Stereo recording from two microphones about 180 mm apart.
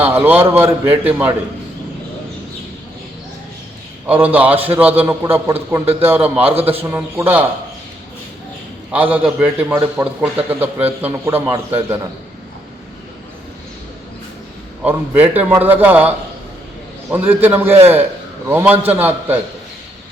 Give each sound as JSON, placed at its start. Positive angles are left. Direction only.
{"t": 0.0, "sound": "a man's voice", "side_deg": -10}
{"t": 4.0, "sound": "a man's voice", "side_deg": -10}
{"t": 9.1, "sound": "a man's voice", "side_deg": -10}
{"t": 14.8, "sound": "a man's voice", "side_deg": -10}